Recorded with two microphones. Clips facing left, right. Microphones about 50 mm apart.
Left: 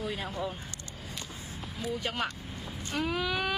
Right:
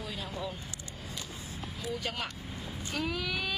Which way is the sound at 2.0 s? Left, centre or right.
Left.